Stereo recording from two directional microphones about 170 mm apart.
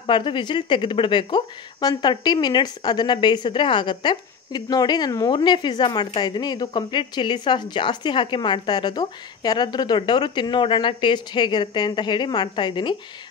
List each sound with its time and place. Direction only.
0.0 s speech: 30° left (ahead or behind)